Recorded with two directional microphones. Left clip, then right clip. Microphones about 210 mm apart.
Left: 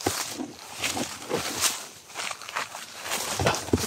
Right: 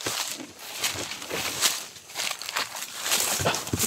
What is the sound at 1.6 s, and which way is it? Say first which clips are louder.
Walk: right 2 dB; centre (ahead or behind).